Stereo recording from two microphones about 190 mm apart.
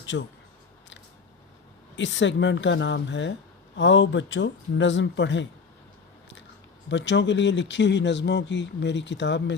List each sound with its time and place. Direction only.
0.1 s speech: 70° left (ahead or behind)
2.0 s speech: 75° left (ahead or behind)
6.8 s speech: 70° left (ahead or behind)